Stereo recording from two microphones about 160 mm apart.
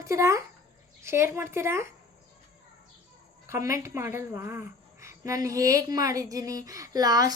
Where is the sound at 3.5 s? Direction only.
20° right (ahead or behind).